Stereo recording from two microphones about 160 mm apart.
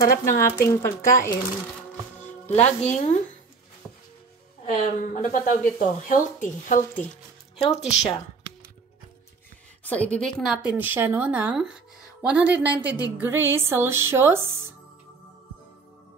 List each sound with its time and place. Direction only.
0.0 s speech: 65° left (ahead or behind)
0.4 s speech: 15° left (ahead or behind)
2.5 s speech: 45° left (ahead or behind)
3.8 s music: centre (ahead or behind)
4.6 s speech: 55° left (ahead or behind)
7.6 s speech: 40° left (ahead or behind)
10.0 s a woman's voice: 5° left (ahead or behind); by 14.7 s 15° right (ahead or behind)